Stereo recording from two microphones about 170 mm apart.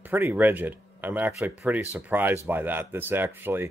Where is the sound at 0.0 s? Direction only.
10° right (ahead or behind).